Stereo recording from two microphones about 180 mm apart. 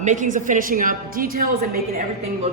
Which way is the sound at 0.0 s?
45° right (ahead or behind).